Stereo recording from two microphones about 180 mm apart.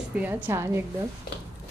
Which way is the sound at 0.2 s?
10° right (ahead or behind).